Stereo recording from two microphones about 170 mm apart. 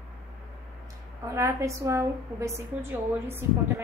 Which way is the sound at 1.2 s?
20° right (ahead or behind).